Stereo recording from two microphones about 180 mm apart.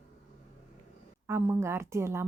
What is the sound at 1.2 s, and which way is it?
A woman's voice, 10° right (ahead or behind).